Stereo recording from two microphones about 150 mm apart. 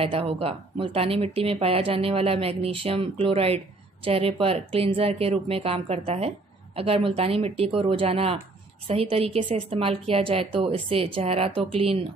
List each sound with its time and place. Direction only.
0.0 s speech: 40° right (ahead or behind)